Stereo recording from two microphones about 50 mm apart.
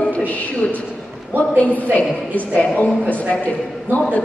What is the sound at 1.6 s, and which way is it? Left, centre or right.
A woman's voice, left.